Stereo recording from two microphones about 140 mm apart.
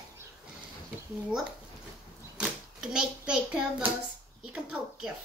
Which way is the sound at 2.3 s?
5° right (ahead or behind).